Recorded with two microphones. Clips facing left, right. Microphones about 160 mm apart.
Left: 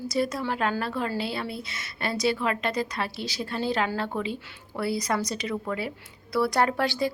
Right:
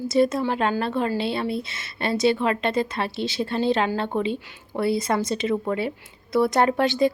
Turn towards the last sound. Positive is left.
turn(degrees=-20)  # may be behind; listen again after turning